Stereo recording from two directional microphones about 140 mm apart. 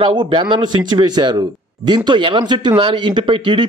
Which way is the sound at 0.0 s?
35° right (ahead or behind).